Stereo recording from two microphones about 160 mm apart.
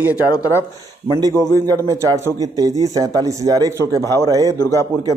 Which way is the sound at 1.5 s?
20° right (ahead or behind).